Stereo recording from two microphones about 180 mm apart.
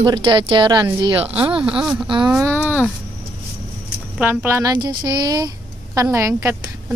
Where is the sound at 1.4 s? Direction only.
5° right (ahead or behind).